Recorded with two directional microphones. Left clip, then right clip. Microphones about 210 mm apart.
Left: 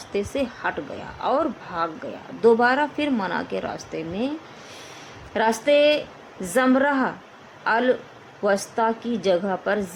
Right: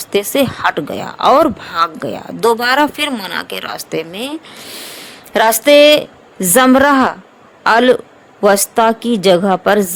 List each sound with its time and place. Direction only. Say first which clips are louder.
0.1 s a woman's voice: right 12 dB; 55° right (ahead or behind)
5.3 s a woman's voice: right 10 dB; 55° right (ahead or behind)